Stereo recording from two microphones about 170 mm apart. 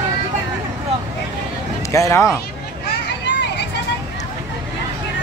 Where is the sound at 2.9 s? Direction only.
90° left.